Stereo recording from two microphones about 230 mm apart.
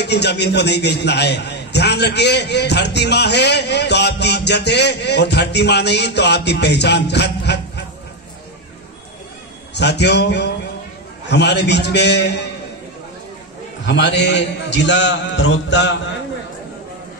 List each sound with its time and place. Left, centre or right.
0.0 s a man's voice: left
9.8 s a man's voice: left
13.8 s a man's voice: left